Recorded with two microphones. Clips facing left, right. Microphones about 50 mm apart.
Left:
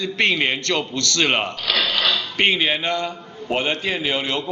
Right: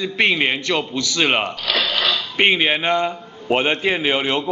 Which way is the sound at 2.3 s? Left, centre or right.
Centre.